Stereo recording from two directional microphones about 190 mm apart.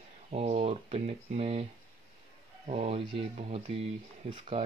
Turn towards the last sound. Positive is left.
turn(degrees=-35)  # may be behind; listen again after turning